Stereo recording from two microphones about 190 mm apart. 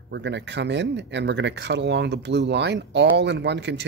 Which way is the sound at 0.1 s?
65° right (ahead or behind).